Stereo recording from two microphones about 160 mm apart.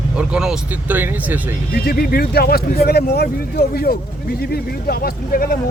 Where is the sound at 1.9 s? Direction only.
75° left (ahead or behind).